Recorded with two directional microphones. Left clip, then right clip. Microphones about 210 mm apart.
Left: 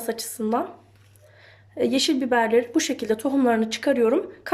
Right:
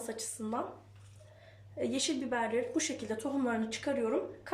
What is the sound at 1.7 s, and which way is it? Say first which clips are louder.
A woman's voice: left 12 dB; 45° left (ahead or behind).